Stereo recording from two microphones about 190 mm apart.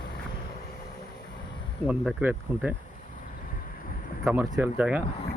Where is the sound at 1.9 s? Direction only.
5° right (ahead or behind).